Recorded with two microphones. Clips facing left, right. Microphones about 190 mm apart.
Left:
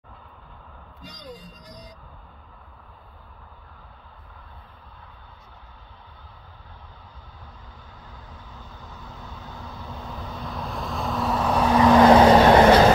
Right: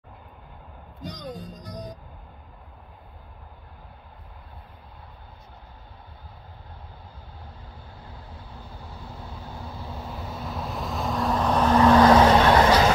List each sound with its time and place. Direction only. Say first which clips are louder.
1.1 s speech: right 2 dB; 50° right (ahead or behind)
8.5 s vehicle: right 2 dB; 10° right (ahead or behind); by 12.1 s 10° left (ahead or behind)
12.1 s vehicle: left 3 dB; 25° left (ahead or behind)